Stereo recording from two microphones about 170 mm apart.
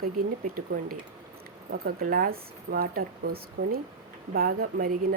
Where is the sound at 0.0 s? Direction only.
60° right (ahead or behind).